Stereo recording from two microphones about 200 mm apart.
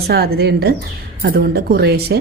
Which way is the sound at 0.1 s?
50° right (ahead or behind).